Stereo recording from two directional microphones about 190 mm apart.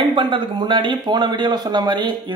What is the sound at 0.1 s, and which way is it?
Speech, 25° right (ahead or behind).